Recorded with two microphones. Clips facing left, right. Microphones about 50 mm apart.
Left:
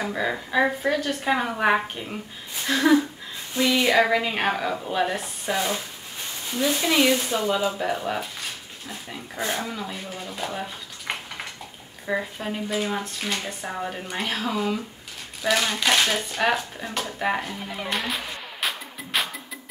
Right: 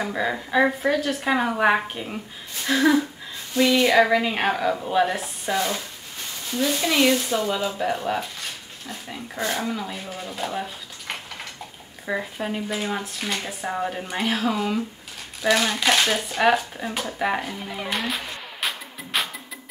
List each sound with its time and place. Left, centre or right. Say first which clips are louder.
0.0 s speech: right 1 dB; centre
11.1 s a sound: left 2 dB; centre
12.1 s speech: even; centre